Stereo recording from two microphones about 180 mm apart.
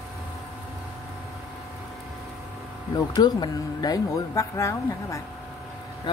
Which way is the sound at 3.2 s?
20° left (ahead or behind).